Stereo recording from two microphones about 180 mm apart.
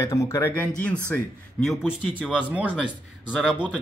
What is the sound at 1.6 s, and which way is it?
Speech, centre (ahead or behind).